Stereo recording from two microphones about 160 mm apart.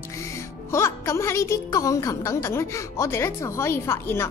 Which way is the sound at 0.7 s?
15° left (ahead or behind).